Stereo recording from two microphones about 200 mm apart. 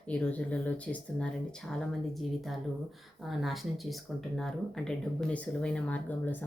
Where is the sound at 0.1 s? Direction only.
5° left (ahead or behind).